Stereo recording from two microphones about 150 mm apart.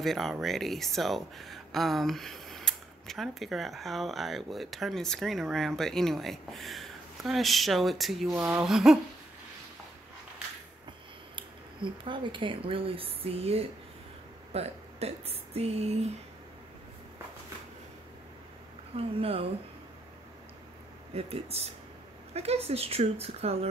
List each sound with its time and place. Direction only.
0.0 s speech: centre (ahead or behind)
11.3 s speech: 35° right (ahead or behind)
18.9 s speech: 40° right (ahead or behind)
21.1 s speech: 40° right (ahead or behind)